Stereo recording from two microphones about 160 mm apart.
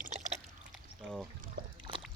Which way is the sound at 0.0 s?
50° right (ahead or behind).